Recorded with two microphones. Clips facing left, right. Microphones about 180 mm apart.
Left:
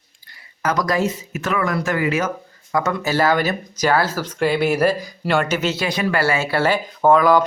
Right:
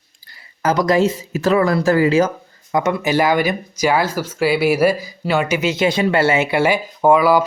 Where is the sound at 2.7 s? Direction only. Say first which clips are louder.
Right 3 dB; 15° right (ahead or behind).